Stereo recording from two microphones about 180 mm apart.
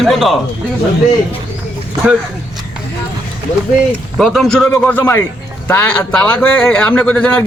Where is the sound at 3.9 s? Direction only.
Centre (ahead or behind).